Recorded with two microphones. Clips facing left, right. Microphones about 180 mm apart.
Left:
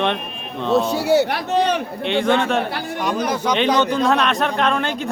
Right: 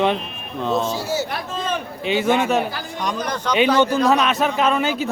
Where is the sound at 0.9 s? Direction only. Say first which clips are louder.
Left 7 dB; 65° left (ahead or behind).